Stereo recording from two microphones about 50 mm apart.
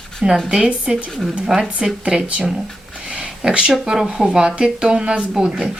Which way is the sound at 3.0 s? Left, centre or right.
Centre.